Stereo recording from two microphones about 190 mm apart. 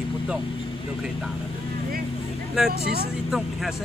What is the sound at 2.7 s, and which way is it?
Speech, 55° right (ahead or behind).